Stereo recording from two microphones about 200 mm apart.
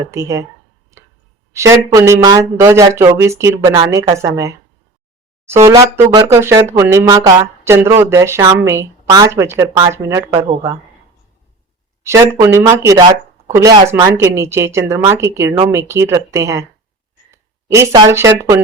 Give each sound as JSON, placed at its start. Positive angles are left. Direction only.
{"t": 0.1, "sound": "speech", "side_deg": -15}
{"t": 1.5, "sound": "speech", "side_deg": -15}
{"t": 5.6, "sound": "speech", "side_deg": -15}
{"t": 12.0, "sound": "speech", "side_deg": -15}
{"t": 17.3, "sound": "a sound", "side_deg": -15}
{"t": 18.3, "sound": "speech", "side_deg": -15}